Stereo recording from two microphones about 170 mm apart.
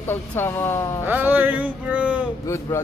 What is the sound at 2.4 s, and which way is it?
Speech, 15° left (ahead or behind).